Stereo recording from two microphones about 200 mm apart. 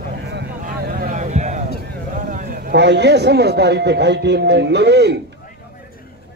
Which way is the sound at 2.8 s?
60° right (ahead or behind).